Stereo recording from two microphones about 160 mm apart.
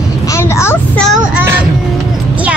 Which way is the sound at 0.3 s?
15° left (ahead or behind).